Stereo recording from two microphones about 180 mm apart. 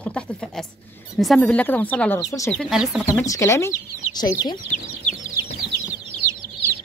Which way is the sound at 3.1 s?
15° left (ahead or behind).